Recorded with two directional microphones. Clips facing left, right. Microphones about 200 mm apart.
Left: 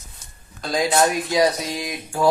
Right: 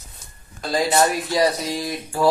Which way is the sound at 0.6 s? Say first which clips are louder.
Even; centre (ahead or behind).